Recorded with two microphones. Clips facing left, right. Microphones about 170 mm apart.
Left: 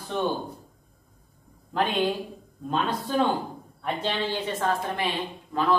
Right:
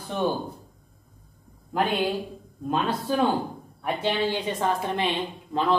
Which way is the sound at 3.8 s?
10° right (ahead or behind).